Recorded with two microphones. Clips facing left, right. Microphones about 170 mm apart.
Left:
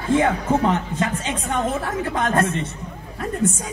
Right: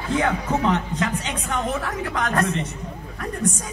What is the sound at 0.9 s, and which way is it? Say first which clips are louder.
Speech: left 2 dB; centre (ahead or behind).